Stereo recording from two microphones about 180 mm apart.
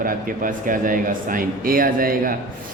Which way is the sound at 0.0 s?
50° right (ahead or behind).